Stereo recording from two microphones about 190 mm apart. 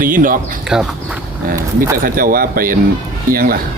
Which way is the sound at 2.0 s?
50° right (ahead or behind).